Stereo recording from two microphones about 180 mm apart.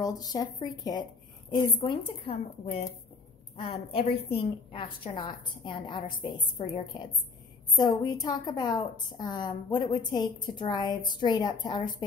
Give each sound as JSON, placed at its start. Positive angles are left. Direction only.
{"t": 0.0, "sound": "a woman's voice", "side_deg": 20}
{"t": 3.9, "sound": "a woman's voice", "side_deg": 30}